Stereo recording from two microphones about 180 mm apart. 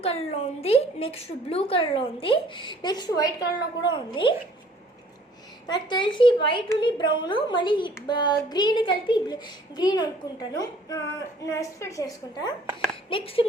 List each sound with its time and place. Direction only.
0.0 s a woman's voice: 35° left (ahead or behind)
5.6 s a woman's voice: 25° left (ahead or behind)